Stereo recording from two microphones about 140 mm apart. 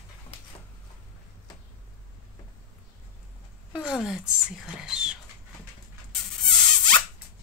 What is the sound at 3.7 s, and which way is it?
Whispering, 5° right (ahead or behind).